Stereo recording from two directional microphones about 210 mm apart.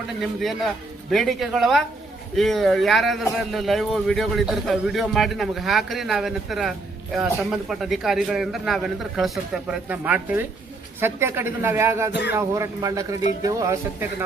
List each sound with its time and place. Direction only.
0.2 s a man's voice: centre (ahead or behind)